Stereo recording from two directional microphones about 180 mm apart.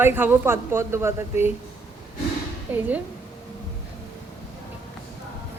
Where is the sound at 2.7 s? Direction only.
10° right (ahead or behind).